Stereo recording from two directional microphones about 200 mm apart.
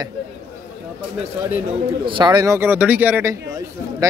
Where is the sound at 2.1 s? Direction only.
20° right (ahead or behind).